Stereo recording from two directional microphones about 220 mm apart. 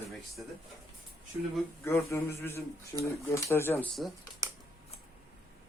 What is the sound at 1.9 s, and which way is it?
A man's voice, 10° left (ahead or behind).